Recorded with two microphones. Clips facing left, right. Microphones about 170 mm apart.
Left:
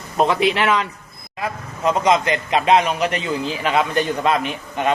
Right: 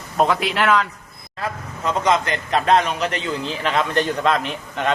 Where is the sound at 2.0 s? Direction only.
15° left (ahead or behind).